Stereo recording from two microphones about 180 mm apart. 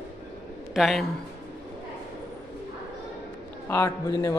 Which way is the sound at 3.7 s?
15° left (ahead or behind).